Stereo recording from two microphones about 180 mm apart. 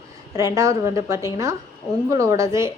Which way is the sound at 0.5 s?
15° right (ahead or behind).